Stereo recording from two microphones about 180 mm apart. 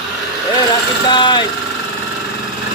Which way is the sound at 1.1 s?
25° left (ahead or behind).